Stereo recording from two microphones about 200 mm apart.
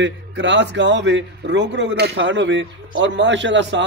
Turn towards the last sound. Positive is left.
turn(degrees=-65)  # may be behind; listen again after turning